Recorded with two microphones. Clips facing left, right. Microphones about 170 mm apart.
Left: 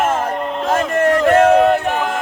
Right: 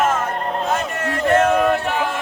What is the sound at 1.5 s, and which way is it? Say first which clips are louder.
Music: left 5 dB; 50° left (ahead or behind).